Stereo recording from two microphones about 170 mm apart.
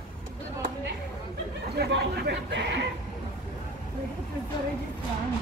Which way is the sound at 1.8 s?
80° right.